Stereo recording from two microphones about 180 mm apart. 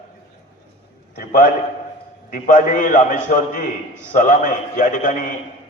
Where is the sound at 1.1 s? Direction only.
50° left (ahead or behind).